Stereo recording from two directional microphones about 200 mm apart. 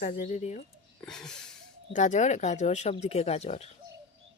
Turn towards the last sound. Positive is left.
turn(degrees=30)  # may be behind; listen again after turning